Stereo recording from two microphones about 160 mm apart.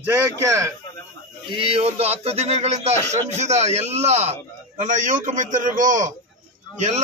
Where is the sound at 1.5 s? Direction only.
35° right (ahead or behind).